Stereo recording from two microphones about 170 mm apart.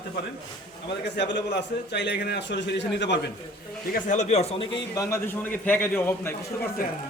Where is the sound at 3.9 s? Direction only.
45° left (ahead or behind).